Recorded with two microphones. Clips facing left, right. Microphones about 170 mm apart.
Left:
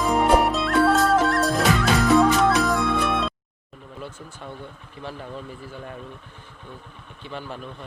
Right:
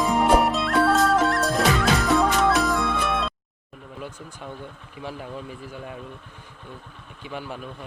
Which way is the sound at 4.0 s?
10° right (ahead or behind).